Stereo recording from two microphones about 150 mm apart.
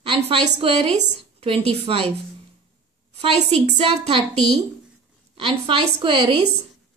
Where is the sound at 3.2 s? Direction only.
45° right (ahead or behind).